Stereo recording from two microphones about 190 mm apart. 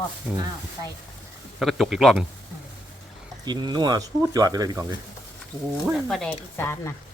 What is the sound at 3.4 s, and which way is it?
Speech, 20° right (ahead or behind).